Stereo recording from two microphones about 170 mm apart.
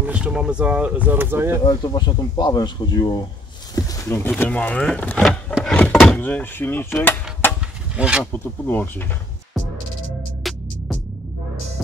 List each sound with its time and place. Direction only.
0.0 s speech: 5° right (ahead or behind)
1.6 s speech: 25° left (ahead or behind)
7.9 s speech: 5° right (ahead or behind)
8.2 s speech: 10° left (ahead or behind)
10.4 s music: centre (ahead or behind)